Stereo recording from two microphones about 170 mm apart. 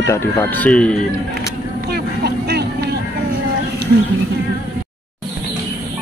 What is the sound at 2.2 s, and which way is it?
Vehicle, 75° right (ahead or behind).